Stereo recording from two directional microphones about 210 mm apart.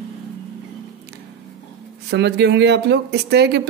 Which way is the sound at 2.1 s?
55° right (ahead or behind).